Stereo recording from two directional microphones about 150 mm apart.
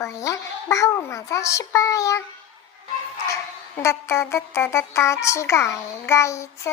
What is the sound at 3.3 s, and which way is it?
Child singing, 20° left (ahead or behind).